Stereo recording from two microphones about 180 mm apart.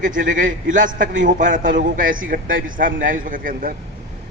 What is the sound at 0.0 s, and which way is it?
A man's voice, 45° right (ahead or behind).